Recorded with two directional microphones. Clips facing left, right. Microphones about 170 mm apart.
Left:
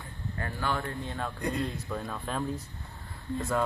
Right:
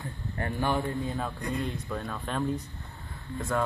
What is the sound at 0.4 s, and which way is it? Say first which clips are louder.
Speech: right 4 dB; 20° right (ahead or behind).